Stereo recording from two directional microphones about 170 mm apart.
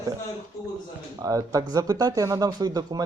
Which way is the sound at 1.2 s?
20° right (ahead or behind).